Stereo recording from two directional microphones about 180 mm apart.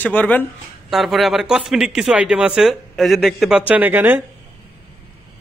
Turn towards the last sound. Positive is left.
turn(degrees=-10)  # may be behind; listen again after turning